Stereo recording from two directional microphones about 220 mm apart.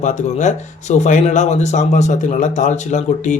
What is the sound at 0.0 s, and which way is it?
Speech, 35° left (ahead or behind).